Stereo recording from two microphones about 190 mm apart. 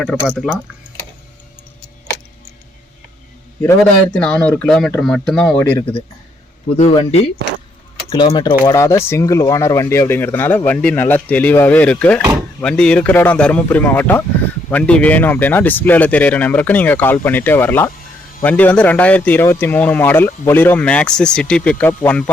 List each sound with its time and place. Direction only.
0.0 s speech: centre (ahead or behind)
4.1 s speech: 5° left (ahead or behind)
5.7 s speech: 30° left (ahead or behind); by 22.2 s 10° left (ahead or behind)